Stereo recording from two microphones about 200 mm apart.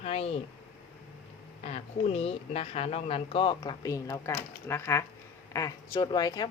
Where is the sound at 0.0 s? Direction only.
30° left (ahead or behind).